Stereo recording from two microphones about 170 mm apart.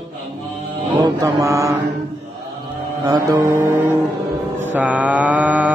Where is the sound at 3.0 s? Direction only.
20° right (ahead or behind).